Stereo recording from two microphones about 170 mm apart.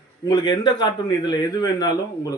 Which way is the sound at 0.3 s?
25° left (ahead or behind).